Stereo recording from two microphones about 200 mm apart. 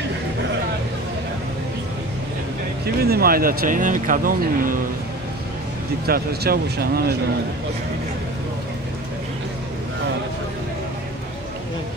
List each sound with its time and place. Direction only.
3.0 s speech: 50° right (ahead or behind)
6.0 s speech: 50° right (ahead or behind)